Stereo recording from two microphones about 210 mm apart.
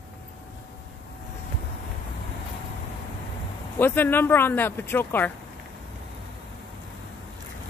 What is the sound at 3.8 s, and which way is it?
Speech, 10° left (ahead or behind).